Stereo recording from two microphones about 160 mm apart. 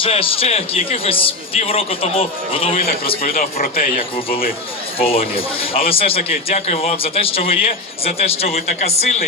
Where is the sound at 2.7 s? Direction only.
65° left (ahead or behind).